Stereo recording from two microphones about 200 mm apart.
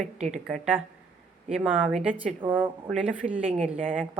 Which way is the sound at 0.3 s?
5° right (ahead or behind).